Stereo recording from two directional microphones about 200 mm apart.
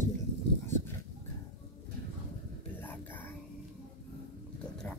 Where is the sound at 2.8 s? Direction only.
10° left (ahead or behind).